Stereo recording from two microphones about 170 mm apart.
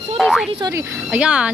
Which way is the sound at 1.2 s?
5° right (ahead or behind).